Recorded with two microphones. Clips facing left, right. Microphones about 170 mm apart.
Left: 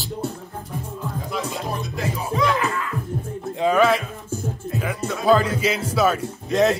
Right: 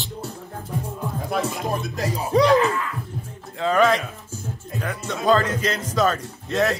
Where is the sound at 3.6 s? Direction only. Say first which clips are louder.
Left 1 dB; 10° left (ahead or behind).